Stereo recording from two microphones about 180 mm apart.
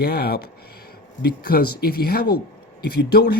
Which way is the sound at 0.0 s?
60° left (ahead or behind).